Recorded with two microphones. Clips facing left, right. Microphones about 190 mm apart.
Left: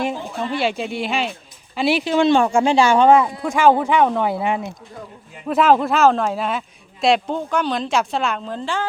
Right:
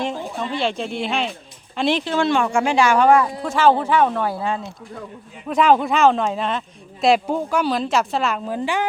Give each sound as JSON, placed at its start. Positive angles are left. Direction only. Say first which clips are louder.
{"t": 0.0, "sound": "speech", "louder": "left 1 dB", "side_deg": 10}
{"t": 3.4, "sound": "speech", "louder": "left 1 dB", "side_deg": 10}
{"t": 5.5, "sound": "speech", "louder": "left 1 dB", "side_deg": 5}